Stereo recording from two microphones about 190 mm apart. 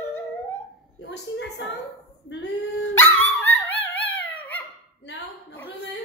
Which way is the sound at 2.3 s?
70° left (ahead or behind).